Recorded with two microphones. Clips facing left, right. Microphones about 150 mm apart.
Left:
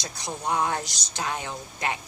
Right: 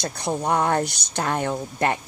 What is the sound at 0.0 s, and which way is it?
Speech, 60° right (ahead or behind).